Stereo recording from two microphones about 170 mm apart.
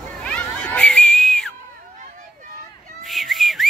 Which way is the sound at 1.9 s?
50° right (ahead or behind).